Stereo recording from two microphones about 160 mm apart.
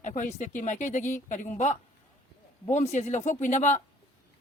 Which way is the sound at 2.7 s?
45° left (ahead or behind).